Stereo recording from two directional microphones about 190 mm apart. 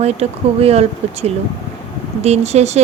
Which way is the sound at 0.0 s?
35° right (ahead or behind).